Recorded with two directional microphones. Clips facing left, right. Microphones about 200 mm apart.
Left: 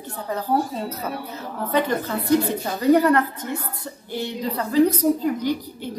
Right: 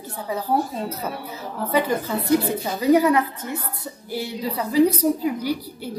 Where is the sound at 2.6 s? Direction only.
10° right (ahead or behind).